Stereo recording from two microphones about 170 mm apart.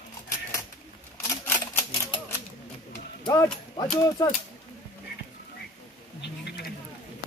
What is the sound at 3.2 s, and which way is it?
Speech, 25° left (ahead or behind).